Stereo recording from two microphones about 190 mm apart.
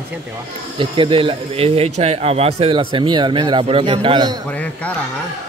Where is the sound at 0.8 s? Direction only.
25° right (ahead or behind).